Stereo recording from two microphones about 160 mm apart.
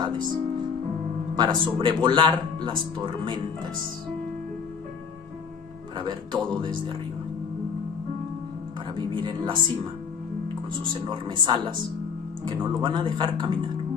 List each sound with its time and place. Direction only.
1.3 s speech: 25° right (ahead or behind)
5.9 s speech: 30° right (ahead or behind)
8.9 s speech: 30° right (ahead or behind)